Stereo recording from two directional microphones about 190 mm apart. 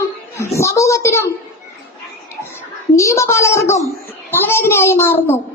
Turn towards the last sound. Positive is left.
turn(degrees=10)  # may be behind; listen again after turning